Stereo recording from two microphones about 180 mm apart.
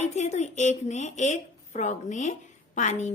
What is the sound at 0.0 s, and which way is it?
A woman's voice, 40° left (ahead or behind).